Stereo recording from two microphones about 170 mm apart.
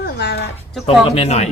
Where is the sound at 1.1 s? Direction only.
40° left (ahead or behind).